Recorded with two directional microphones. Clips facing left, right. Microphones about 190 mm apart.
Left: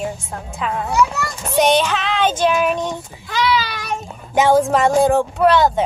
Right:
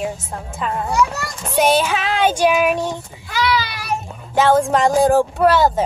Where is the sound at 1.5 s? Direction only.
5° right (ahead or behind).